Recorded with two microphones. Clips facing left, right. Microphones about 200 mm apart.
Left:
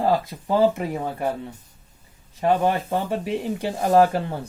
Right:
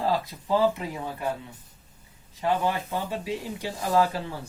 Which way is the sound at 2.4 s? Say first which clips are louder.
Left 5 dB; 55° left (ahead or behind).